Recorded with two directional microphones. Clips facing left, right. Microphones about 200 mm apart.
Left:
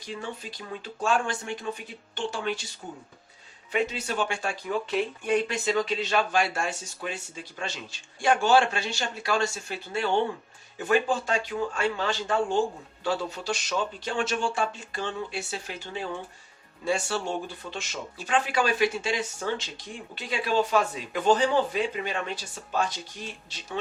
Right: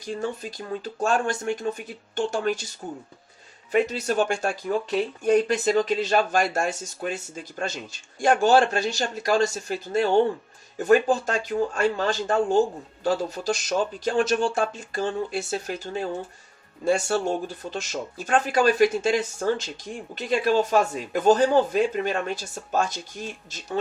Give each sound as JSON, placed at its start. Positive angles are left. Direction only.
{"t": 0.0, "sound": "speech", "side_deg": -45}
{"t": 3.7, "sound": "speech", "side_deg": -45}